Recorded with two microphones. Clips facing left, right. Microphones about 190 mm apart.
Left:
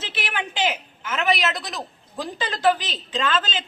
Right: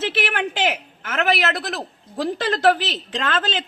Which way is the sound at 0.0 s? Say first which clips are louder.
Right 7 dB; 60° right (ahead or behind).